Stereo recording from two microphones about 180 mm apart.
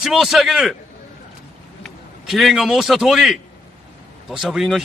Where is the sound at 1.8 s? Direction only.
Centre (ahead or behind).